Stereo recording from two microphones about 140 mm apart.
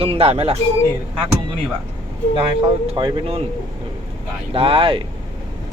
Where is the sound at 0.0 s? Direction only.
45° right (ahead or behind).